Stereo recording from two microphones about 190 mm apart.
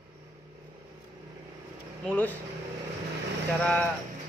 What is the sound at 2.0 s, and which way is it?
Speech, 10° left (ahead or behind).